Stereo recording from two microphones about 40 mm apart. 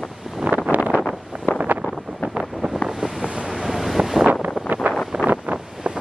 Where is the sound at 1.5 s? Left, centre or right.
Left.